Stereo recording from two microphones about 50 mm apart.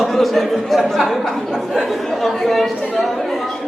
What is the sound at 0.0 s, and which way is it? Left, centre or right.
A man's voice, centre.